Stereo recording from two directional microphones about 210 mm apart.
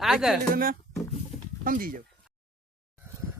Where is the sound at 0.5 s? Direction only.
45° right (ahead or behind).